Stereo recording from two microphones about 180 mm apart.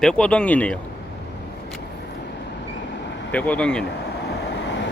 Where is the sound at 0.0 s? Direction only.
5° left (ahead or behind).